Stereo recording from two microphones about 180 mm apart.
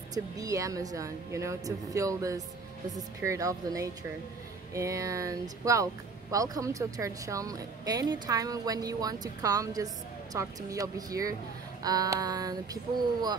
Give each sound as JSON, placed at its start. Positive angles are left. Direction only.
{"t": 0.1, "sound": "a woman's voice", "side_deg": -20}